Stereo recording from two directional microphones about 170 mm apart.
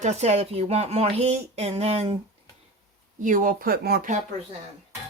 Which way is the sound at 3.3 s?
50° right (ahead or behind).